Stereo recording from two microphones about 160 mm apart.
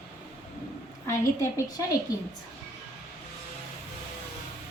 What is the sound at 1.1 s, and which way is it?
Speech, 20° left (ahead or behind).